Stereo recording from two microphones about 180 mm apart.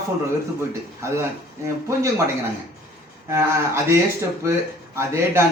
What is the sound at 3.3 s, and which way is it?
A man's voice, 15° right (ahead or behind).